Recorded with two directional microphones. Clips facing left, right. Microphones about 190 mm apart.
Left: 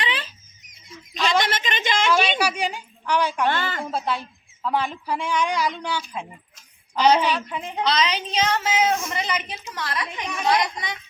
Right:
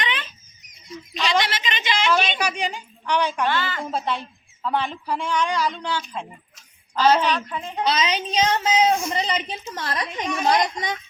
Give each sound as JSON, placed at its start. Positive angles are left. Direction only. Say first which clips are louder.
{"t": 0.0, "sound": "a sound", "louder": "even", "side_deg": 35}
{"t": 1.5, "sound": "a woman's voice", "louder": "left 1 dB", "side_deg": 50}
{"t": 2.4, "sound": "speech", "louder": "left 1 dB", "side_deg": 10}
{"t": 3.4, "sound": "a woman's voice", "louder": "even", "side_deg": 50}
{"t": 3.8, "sound": "a woman's voice", "louder": "even", "side_deg": 5}
{"t": 7.9, "sound": "a woman's voice", "louder": "right 1 dB", "side_deg": -10}
{"t": 8.5, "sound": "speech", "louder": "right 3 dB", "side_deg": -25}
{"t": 9.7, "sound": "a child's voice", "louder": "right 1 dB", "side_deg": -40}